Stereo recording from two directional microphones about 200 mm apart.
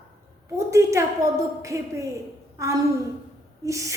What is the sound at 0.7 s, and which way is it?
A woman's voice, 15° right (ahead or behind).